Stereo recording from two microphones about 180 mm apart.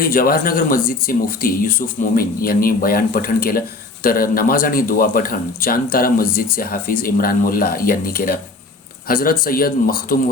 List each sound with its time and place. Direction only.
0.0 s a man's voice: 50° left (ahead or behind)